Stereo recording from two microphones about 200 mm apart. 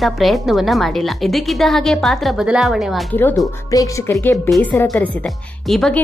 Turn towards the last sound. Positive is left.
turn(degrees=0)  # may be behind; listen again after turning